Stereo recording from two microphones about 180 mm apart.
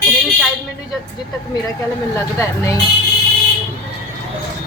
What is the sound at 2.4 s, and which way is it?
Speech, 15° left (ahead or behind).